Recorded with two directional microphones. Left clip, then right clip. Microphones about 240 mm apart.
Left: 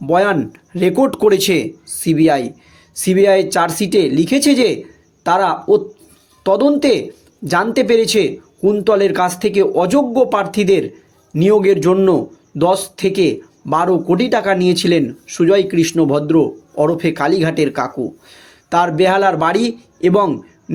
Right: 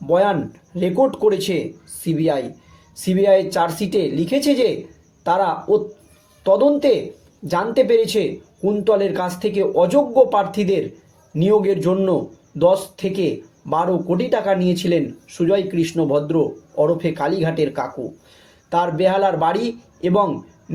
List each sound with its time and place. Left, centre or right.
0.1 s a man's voice: left